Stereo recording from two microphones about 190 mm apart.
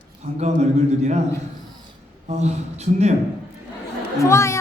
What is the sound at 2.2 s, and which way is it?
Speech, 35° right (ahead or behind).